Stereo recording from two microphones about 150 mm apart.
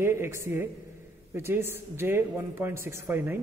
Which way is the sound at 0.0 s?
15° right (ahead or behind).